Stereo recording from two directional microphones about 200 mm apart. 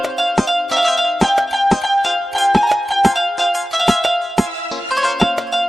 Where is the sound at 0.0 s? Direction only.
Centre (ahead or behind).